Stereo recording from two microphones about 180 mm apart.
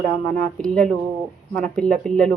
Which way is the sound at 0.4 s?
5° left (ahead or behind).